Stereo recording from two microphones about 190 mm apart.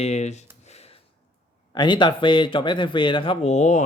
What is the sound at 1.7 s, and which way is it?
Speech, 25° left (ahead or behind).